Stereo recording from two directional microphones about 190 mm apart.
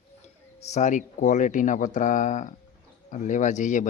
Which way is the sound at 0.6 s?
40° left (ahead or behind).